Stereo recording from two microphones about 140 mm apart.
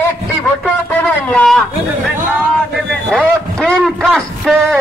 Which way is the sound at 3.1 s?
Centre (ahead or behind).